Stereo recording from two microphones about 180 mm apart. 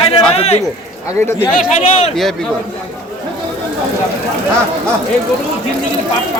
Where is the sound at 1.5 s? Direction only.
45° left (ahead or behind).